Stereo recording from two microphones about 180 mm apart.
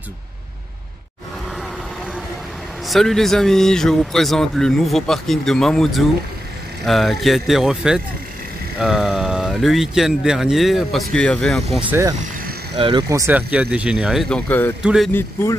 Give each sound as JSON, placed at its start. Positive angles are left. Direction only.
{"t": 2.9, "sound": "speech", "side_deg": 0}
{"t": 11.9, "sound": "speech", "side_deg": -15}
{"t": 12.7, "sound": "speech", "side_deg": -25}